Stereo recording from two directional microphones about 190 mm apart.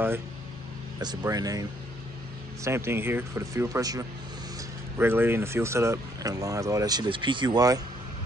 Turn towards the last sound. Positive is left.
turn(degrees=-20)  # may be behind; listen again after turning